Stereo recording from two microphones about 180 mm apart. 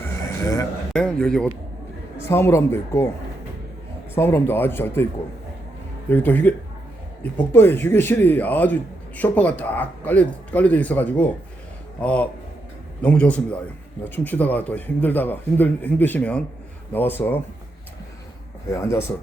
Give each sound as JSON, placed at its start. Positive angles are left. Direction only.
{"t": 0.9, "sound": "a man's voice", "side_deg": 5}
{"t": 2.2, "sound": "speech", "side_deg": 15}
{"t": 4.1, "sound": "speech", "side_deg": 15}
{"t": 6.1, "sound": "speech", "side_deg": 10}
{"t": 18.7, "sound": "speech", "side_deg": 15}